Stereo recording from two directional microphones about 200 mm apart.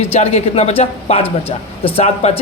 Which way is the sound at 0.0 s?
30° left (ahead or behind).